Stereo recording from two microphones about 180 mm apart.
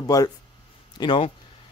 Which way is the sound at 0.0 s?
20° left (ahead or behind).